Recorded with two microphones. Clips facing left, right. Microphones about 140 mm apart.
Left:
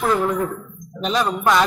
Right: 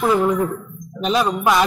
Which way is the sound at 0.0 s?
5° right (ahead or behind).